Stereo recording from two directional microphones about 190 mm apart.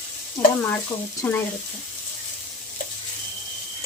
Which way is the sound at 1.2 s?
10° left (ahead or behind).